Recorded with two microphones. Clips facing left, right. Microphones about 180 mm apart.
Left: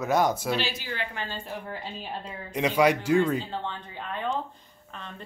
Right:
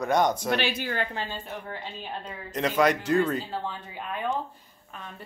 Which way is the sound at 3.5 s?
10° right (ahead or behind).